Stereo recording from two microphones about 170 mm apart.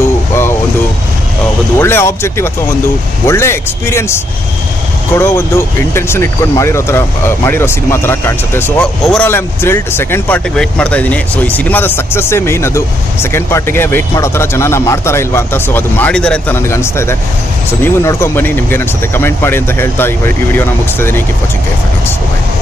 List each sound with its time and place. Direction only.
1.8 s speech: 15° left (ahead or behind)
9.0 s speech: centre (ahead or behind)
9.3 s speech: 15° left (ahead or behind)